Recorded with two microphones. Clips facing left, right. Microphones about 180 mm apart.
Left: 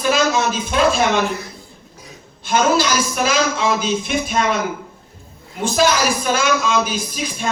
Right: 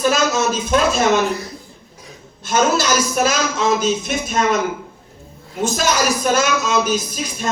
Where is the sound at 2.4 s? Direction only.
45° right (ahead or behind).